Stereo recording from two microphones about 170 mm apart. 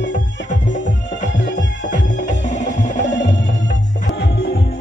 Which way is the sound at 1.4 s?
90° left.